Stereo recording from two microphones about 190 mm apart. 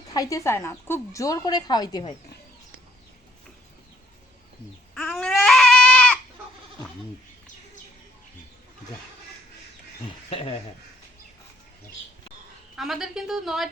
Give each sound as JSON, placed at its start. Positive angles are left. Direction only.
{"t": 0.1, "sound": "a woman's voice", "side_deg": 20}
{"t": 4.9, "sound": "baby cry", "side_deg": 0}
{"t": 10.2, "sound": "speech", "side_deg": 30}
{"t": 12.7, "sound": "speech", "side_deg": 0}